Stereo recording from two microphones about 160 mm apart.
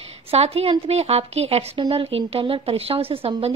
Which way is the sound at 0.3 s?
40° right (ahead or behind).